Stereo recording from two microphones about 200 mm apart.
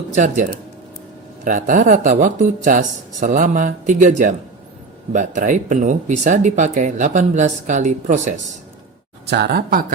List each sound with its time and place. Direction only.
0.1 s speech: 35° right (ahead or behind)
1.5 s speech: 40° right (ahead or behind)
9.2 s speech: 55° right (ahead or behind)